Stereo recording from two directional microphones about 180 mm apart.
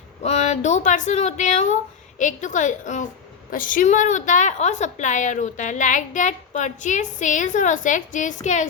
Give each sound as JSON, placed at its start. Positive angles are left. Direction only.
{"t": 0.2, "sound": "a woman's voice", "side_deg": 40}